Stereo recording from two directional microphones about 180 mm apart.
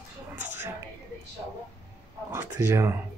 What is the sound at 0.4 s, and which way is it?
Speech, 10° right (ahead or behind).